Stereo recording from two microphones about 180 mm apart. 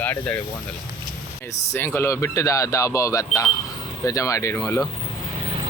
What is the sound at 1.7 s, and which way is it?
Speech, 10° left (ahead or behind).